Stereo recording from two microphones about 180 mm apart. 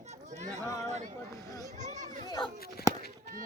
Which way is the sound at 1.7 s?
40° right (ahead or behind).